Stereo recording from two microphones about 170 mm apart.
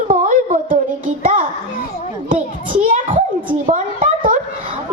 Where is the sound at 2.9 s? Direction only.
45° right (ahead or behind).